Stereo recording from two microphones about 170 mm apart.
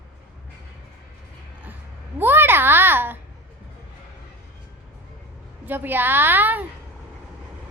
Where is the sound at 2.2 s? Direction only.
10° right (ahead or behind).